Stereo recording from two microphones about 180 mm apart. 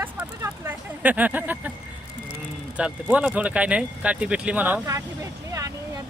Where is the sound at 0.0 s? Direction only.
10° right (ahead or behind).